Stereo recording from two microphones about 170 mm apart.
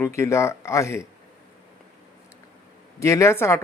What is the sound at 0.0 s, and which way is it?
Speech, 15° left (ahead or behind).